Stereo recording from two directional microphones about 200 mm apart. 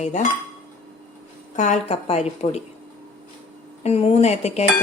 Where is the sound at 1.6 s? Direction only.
35° left (ahead or behind).